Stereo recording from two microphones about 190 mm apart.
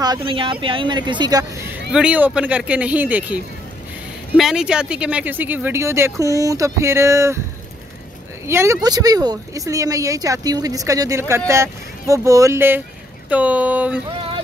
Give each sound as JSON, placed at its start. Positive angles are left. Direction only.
{"t": 0.0, "sound": "speech", "side_deg": -25}
{"t": 1.9, "sound": "speech", "side_deg": -5}
{"t": 8.5, "sound": "speech", "side_deg": -15}